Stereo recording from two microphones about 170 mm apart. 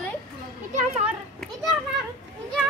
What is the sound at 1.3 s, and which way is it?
Children playing, centre (ahead or behind).